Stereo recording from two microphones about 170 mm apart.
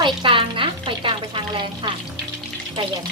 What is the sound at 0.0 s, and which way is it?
Music, 30° right (ahead or behind).